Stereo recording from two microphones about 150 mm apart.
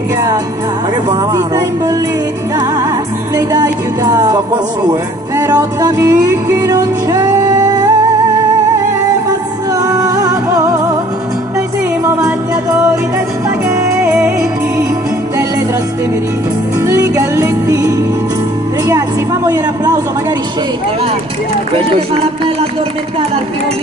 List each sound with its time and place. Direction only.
1.3 s music: 25° right (ahead or behind)
3.3 s music: 25° right (ahead or behind)
5.5 s music: 25° right (ahead or behind)
9.8 s music: 25° right (ahead or behind)
13.7 s music: 15° right (ahead or behind)
16.8 s music: 20° right (ahead or behind)
18.9 s a woman's voice: 20° right (ahead or behind)
21.9 s speech: 35° right (ahead or behind)